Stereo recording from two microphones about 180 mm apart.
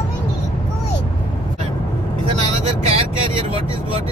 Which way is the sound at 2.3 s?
35° right (ahead or behind).